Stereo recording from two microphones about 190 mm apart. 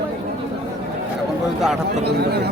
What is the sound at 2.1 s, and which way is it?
Speech, 60° right (ahead or behind).